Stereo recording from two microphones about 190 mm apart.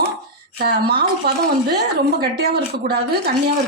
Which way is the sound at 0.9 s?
55° right (ahead or behind).